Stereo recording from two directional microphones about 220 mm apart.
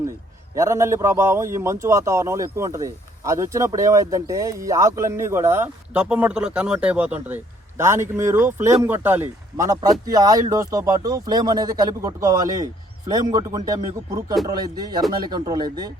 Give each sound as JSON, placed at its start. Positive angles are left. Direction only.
{"t": 0.5, "sound": "a man's voice", "side_deg": -15}